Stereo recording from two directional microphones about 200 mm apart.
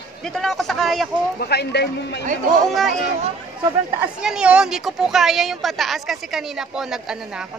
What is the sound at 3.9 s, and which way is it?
Speech, 5° right (ahead or behind).